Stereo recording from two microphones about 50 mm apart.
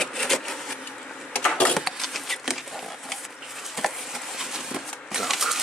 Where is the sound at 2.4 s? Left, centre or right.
Centre.